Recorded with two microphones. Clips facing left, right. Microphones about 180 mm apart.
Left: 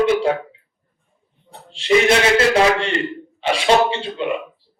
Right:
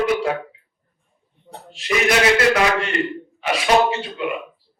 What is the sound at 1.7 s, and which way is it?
Speech, 25° left (ahead or behind).